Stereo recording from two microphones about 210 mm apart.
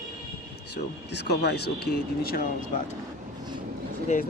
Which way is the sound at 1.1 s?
55° left (ahead or behind).